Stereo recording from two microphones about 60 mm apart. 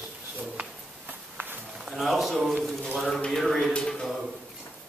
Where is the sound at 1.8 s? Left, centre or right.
Centre.